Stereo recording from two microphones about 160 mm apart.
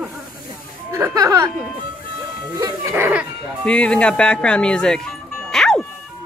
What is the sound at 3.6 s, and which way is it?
Speech, 5° left (ahead or behind).